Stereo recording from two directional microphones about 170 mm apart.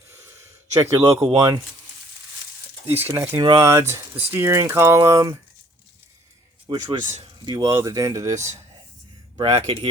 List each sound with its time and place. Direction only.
0.1 s a sound: 15° right (ahead or behind)
1.4 s speech: 20° right (ahead or behind)
2.8 s speech: 10° right (ahead or behind)
6.7 s speech: 25° right (ahead or behind)
9.6 s speech: 35° right (ahead or behind)